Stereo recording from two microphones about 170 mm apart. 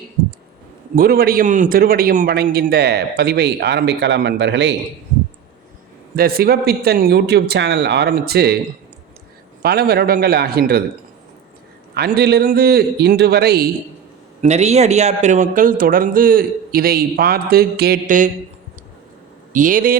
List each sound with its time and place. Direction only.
0.9 s a man's voice: 60° right (ahead or behind); by 4.7 s 90° right
6.1 s a man's voice: 60° right (ahead or behind)
9.6 s a man's voice: 65° right (ahead or behind)
11.9 s a man's voice: 70° right (ahead or behind)
14.4 s speech: 40° right (ahead or behind)
19.5 s speech: 50° right (ahead or behind)